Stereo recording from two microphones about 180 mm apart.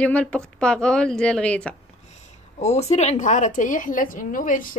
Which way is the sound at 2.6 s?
35° left (ahead or behind).